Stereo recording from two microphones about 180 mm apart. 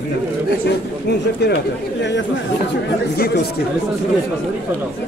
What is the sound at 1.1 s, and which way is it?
Speech, 70° left (ahead or behind).